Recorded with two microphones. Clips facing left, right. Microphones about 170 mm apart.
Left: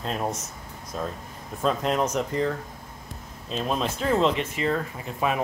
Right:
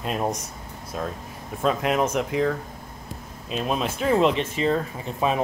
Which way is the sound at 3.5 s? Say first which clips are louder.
Right 1 dB; 10° right (ahead or behind).